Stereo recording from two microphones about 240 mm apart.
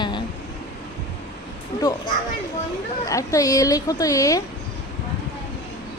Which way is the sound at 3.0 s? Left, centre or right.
Centre.